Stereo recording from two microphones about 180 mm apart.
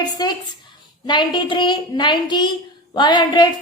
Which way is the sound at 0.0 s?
25° left (ahead or behind).